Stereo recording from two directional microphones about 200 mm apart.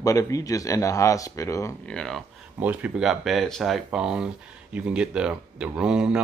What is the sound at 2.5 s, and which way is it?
Speech, 5° right (ahead or behind).